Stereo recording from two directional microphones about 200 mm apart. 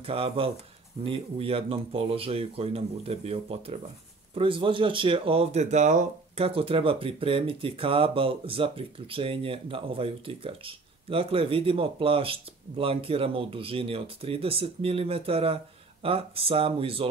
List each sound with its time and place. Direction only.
0.0 s speech: 30° right (ahead or behind)